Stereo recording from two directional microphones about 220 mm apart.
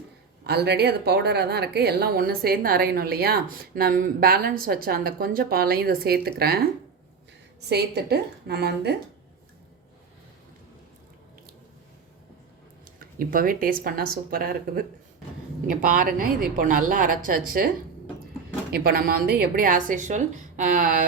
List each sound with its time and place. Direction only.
0.4 s a woman's voice: 45° right (ahead or behind)
7.7 s a woman's voice: 45° right (ahead or behind)
13.0 s a woman's voice: 40° right (ahead or behind)
18.7 s a woman's voice: 45° right (ahead or behind)